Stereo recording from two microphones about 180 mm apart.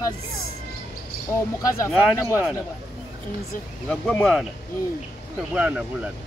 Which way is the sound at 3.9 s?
5° left (ahead or behind).